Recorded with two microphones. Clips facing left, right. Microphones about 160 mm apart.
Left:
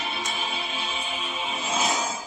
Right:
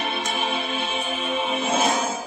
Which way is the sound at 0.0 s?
55° right (ahead or behind).